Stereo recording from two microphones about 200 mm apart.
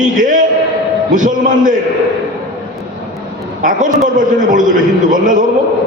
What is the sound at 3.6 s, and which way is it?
A man's voice, 40° right (ahead or behind).